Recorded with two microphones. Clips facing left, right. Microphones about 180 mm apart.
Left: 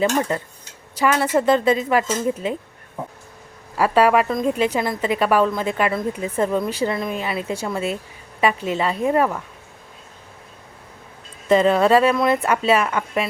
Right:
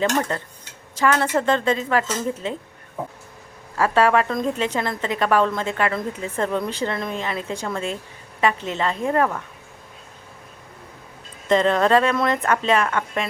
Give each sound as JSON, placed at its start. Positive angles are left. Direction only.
{"t": 0.0, "sound": "a woman's voice", "side_deg": 10}
{"t": 3.8, "sound": "a woman's voice", "side_deg": 10}
{"t": 11.4, "sound": "a woman's voice", "side_deg": 10}